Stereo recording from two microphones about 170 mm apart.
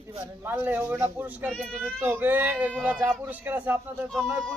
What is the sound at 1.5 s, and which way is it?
Speech, 5° left (ahead or behind).